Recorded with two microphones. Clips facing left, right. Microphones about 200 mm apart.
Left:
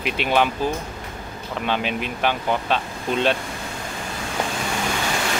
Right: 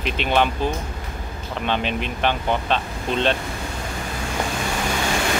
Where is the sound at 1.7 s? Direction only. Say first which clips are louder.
Right 1 dB; 5° left (ahead or behind).